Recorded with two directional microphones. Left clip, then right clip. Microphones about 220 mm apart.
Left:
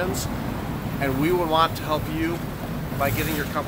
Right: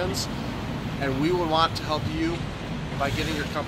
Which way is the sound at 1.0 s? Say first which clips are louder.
Left 2 dB; 10° left (ahead or behind).